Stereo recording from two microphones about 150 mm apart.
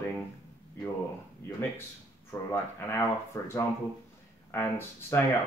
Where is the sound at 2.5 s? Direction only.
15° left (ahead or behind).